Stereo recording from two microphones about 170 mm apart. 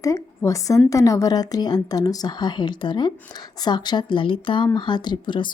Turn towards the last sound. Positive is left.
turn(degrees=30)  # may be behind; listen again after turning